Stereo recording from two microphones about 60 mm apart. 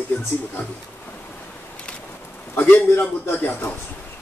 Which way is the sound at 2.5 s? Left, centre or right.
Left.